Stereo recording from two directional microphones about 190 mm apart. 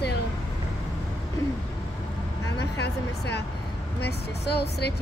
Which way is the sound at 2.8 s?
65° left (ahead or behind).